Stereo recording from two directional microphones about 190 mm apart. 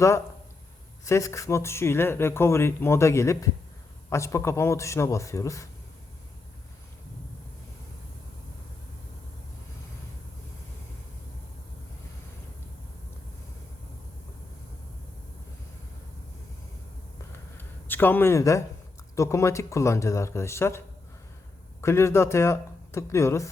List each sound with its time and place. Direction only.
1.0 s speech: 15° left (ahead or behind)
17.6 s a sound: 10° left (ahead or behind)
19.1 s speech: 15° left (ahead or behind)